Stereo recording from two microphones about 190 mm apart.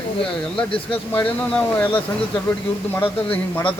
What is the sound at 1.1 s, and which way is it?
Speech, 10° left (ahead or behind).